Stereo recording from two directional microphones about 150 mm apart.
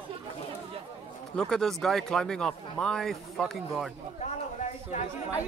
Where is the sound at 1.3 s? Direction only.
5° left (ahead or behind).